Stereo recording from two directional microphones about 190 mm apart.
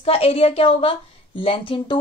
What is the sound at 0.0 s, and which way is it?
A woman's voice, 30° left (ahead or behind).